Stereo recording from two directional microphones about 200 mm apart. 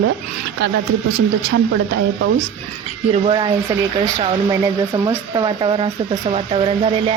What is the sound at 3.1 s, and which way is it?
Speech, 30° right (ahead or behind).